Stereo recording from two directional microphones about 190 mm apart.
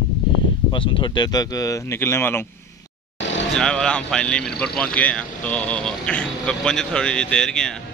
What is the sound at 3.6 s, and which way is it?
Speech, 5° left (ahead or behind).